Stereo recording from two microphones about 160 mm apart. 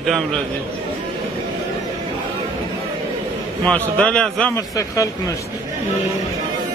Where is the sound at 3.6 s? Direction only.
5° left (ahead or behind).